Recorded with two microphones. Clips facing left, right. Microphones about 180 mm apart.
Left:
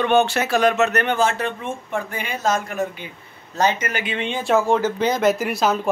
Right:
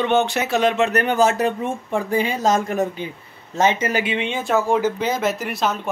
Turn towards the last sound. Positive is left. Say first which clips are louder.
# left 3 dB
turn(degrees=0)  # may be behind; listen again after turning